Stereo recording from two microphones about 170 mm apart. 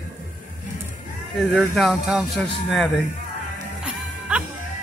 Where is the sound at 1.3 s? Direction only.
5° left (ahead or behind).